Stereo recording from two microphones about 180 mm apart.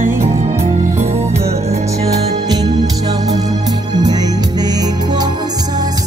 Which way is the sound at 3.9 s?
20° right (ahead or behind).